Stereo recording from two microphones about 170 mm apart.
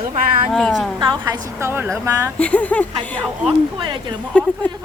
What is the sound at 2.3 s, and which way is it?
Speech, 10° left (ahead or behind).